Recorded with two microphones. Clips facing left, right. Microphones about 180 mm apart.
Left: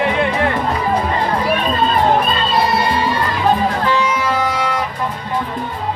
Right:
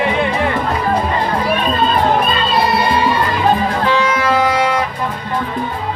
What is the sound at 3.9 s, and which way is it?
Music, 80° right.